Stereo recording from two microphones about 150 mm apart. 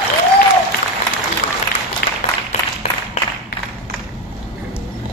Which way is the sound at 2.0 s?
90° left.